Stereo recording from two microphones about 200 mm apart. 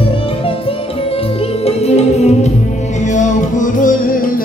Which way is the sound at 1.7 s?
30° left (ahead or behind).